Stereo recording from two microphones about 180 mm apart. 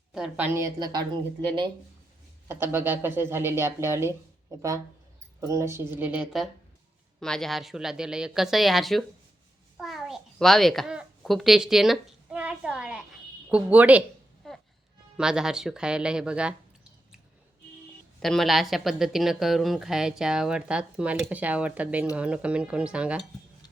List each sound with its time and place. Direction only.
0.1 s a woman's voice: 5° right (ahead or behind); by 1.7 s 25° right (ahead or behind)
2.5 s a woman's voice: 10° right (ahead or behind)
5.4 s a woman's voice: 15° right (ahead or behind); by 9.0 s centre (ahead or behind)
9.7 s babbling: centre (ahead or behind)
13.5 s a woman's voice: 10° right (ahead or behind)
14.4 s music: centre (ahead or behind)
15.2 s speech: 5° right (ahead or behind)
18.2 s a woman's voice: centre (ahead or behind)